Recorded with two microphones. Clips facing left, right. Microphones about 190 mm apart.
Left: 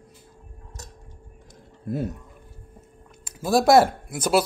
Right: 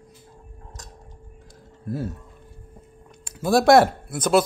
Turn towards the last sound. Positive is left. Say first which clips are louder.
# right 2 dB
turn(degrees=10)  # may be behind; listen again after turning